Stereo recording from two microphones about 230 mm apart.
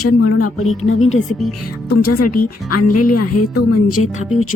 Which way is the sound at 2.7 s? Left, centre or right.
Left.